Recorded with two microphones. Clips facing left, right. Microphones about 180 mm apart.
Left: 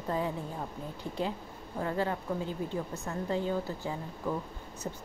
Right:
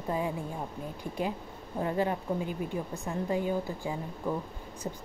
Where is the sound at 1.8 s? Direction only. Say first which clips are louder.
Right 2 dB; 20° right (ahead or behind).